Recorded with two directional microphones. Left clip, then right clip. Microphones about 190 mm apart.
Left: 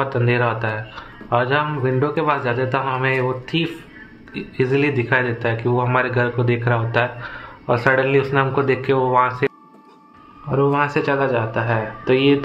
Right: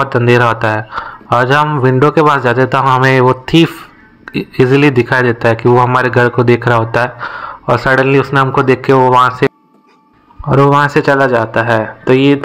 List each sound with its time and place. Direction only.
0.0 s speech: 45° right (ahead or behind)
10.5 s a man's voice: 50° right (ahead or behind)